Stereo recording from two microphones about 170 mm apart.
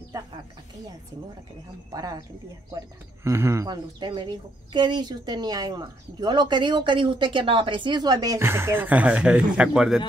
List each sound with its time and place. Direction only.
1.9 s speech: 20° right (ahead or behind)
3.3 s speech: 15° right (ahead or behind)